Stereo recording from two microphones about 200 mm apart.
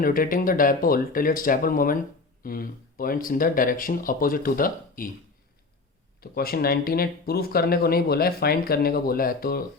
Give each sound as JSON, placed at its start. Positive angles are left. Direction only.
{"t": 0.0, "sound": "speech", "side_deg": 45}
{"t": 6.1, "sound": "speech", "side_deg": 50}